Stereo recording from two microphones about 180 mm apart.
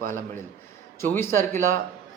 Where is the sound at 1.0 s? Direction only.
15° left (ahead or behind).